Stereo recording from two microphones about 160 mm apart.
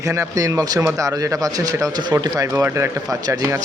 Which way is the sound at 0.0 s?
20° right (ahead or behind).